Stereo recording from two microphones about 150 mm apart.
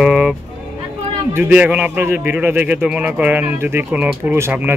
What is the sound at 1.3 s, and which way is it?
A man's voice, 10° right (ahead or behind).